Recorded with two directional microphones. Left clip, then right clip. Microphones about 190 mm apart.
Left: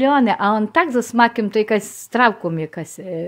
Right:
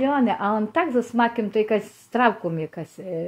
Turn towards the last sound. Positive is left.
turn(degrees=25)  # may be behind; listen again after turning